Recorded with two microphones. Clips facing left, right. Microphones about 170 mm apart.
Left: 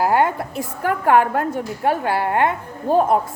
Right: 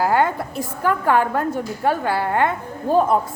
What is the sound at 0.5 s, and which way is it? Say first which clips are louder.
A woman's voice: right 1 dB; 30° right (ahead or behind).